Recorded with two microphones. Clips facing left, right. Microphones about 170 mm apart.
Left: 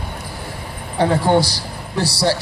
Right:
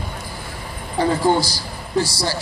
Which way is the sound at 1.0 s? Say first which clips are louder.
Left 2 dB; 65° left (ahead or behind).